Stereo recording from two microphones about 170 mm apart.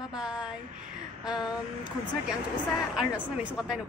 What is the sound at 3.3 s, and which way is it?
Speech, 5° right (ahead or behind).